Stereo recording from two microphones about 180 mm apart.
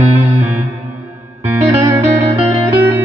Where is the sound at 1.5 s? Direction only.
15° right (ahead or behind).